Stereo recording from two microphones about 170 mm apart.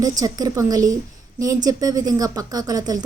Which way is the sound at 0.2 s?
20° right (ahead or behind).